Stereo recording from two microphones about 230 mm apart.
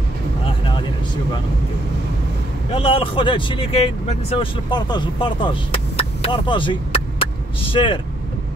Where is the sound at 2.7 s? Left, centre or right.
Left.